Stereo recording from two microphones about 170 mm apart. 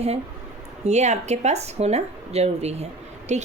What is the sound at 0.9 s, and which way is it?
A woman's voice, 40° right (ahead or behind).